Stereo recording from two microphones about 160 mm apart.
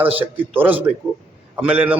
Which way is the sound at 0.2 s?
10° right (ahead or behind).